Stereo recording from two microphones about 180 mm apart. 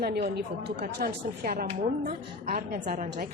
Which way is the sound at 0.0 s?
65° right (ahead or behind).